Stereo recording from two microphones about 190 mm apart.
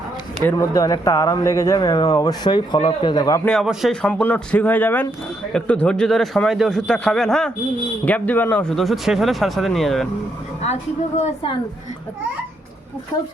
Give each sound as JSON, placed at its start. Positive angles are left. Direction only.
{"t": 0.5, "sound": "speech", "side_deg": 15}
{"t": 3.4, "sound": "a man's voice", "side_deg": 0}